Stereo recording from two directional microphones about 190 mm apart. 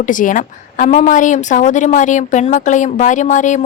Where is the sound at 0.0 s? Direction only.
45° left (ahead or behind).